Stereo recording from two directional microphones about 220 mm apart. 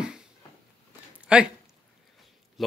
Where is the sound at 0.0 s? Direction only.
5° right (ahead or behind).